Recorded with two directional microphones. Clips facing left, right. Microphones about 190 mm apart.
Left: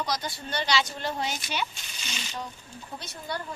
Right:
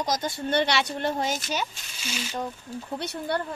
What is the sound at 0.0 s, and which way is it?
A woman's voice, 45° right (ahead or behind).